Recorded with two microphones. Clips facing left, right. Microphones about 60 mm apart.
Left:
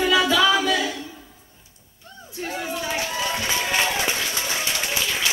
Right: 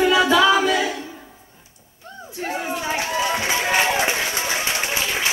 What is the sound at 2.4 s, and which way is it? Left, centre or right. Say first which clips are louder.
Run: right 3 dB; right.